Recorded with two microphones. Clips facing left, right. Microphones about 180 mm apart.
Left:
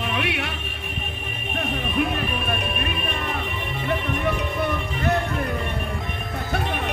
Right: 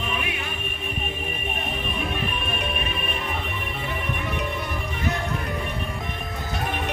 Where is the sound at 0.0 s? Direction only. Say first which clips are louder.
Left 4 dB; 75° left (ahead or behind).